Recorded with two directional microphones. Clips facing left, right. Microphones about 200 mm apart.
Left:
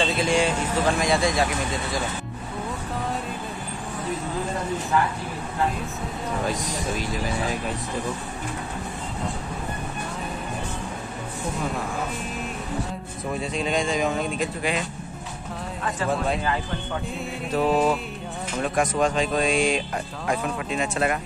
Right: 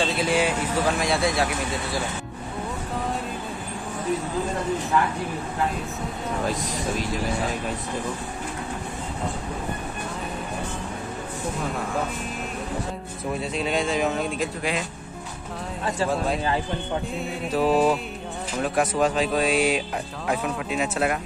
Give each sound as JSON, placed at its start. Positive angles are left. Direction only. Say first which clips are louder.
{"t": 0.0, "sound": "speech", "louder": "left 1 dB", "side_deg": -5}
{"t": 6.4, "sound": "speech", "louder": "right 1 dB", "side_deg": 0}
{"t": 13.4, "sound": "speech", "louder": "left 1 dB", "side_deg": 0}
{"t": 17.5, "sound": "music", "louder": "right 1 dB", "side_deg": -5}
{"t": 18.6, "sound": "speech", "louder": "even", "side_deg": -5}